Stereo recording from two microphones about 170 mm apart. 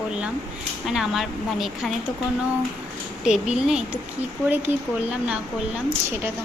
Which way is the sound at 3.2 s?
5° right (ahead or behind).